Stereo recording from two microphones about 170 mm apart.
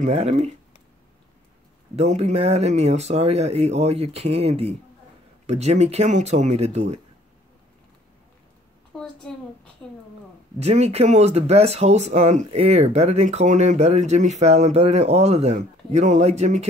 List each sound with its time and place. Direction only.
0.0 s speech: 40° right (ahead or behind)
2.0 s speech: 40° right (ahead or behind)
8.9 s a sound: centre (ahead or behind)
10.6 s speech: 40° right (ahead or behind)